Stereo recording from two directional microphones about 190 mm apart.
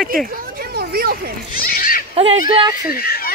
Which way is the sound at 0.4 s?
55° right (ahead or behind).